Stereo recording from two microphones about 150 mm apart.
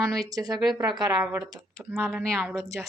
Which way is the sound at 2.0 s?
Centre (ahead or behind).